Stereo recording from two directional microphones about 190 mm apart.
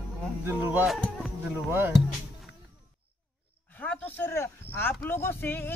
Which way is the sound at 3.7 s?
10° left (ahead or behind).